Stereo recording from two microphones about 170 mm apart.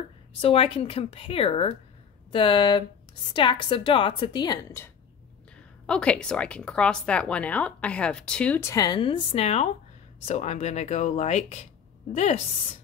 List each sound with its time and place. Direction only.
0.4 s a woman's voice: 35° left (ahead or behind)
5.9 s a woman's voice: 5° left (ahead or behind); by 12.4 s 40° left (ahead or behind)